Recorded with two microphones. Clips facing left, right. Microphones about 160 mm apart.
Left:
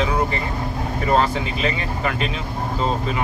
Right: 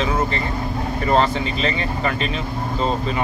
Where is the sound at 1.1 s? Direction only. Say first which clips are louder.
Right 1 dB; 5° left (ahead or behind).